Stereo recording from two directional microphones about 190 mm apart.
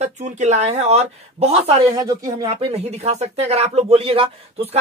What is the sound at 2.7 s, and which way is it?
Speech, 35° right (ahead or behind).